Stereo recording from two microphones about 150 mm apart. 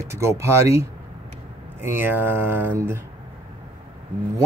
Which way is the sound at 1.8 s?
15° right (ahead or behind).